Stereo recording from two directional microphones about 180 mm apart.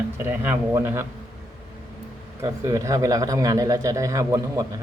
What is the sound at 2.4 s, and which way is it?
A man's voice, 15° right (ahead or behind).